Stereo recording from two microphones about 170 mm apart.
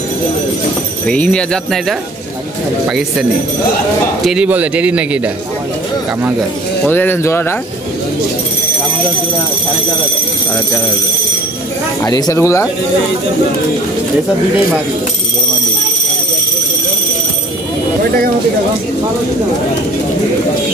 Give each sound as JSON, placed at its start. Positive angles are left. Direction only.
{"t": 1.0, "sound": "speech", "side_deg": 5}
{"t": 6.8, "sound": "speech", "side_deg": 10}
{"t": 12.0, "sound": "speech", "side_deg": 20}